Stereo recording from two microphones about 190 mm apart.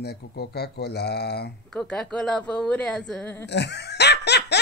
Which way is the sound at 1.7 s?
5° left (ahead or behind).